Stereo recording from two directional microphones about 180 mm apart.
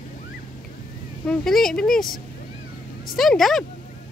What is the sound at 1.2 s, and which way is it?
Speech, 5° left (ahead or behind).